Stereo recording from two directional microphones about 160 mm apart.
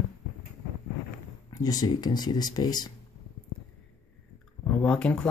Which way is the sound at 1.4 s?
25° left (ahead or behind).